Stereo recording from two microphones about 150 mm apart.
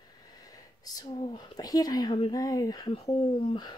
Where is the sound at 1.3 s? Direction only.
25° left (ahead or behind).